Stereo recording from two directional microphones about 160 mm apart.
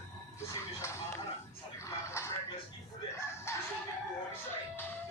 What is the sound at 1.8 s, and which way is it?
Music, 15° left (ahead or behind).